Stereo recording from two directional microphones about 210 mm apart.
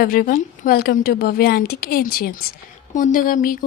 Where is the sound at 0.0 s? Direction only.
45° left (ahead or behind).